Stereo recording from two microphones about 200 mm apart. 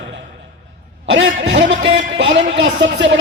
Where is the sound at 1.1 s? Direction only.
70° right (ahead or behind).